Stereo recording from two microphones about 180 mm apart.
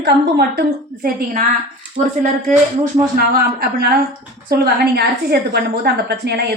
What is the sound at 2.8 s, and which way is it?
A woman's voice, 55° right (ahead or behind).